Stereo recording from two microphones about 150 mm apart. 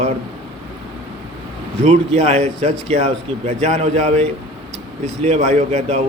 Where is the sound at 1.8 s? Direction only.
45° right (ahead or behind).